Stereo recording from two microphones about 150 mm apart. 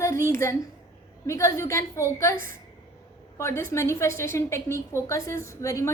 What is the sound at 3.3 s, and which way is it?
A woman's voice, 20° left (ahead or behind).